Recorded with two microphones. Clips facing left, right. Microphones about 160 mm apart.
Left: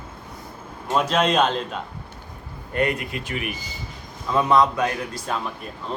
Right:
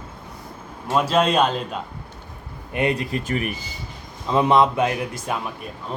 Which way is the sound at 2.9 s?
40° right (ahead or behind).